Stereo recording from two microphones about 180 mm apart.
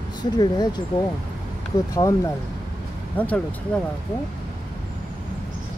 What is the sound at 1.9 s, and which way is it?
Speech, 15° left (ahead or behind).